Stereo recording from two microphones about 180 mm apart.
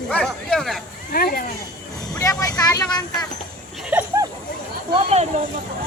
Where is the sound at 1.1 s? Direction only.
55° left (ahead or behind).